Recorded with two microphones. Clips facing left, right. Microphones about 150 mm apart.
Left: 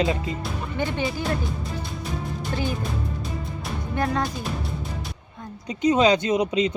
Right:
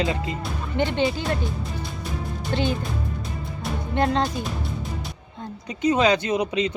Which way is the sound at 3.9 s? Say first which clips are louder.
Right 3 dB; 25° right (ahead or behind).